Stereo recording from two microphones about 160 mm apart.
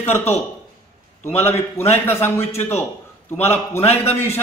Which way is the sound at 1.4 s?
15° left (ahead or behind).